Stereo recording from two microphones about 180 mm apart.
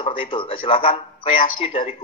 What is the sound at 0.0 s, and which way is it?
Speech, 30° left (ahead or behind).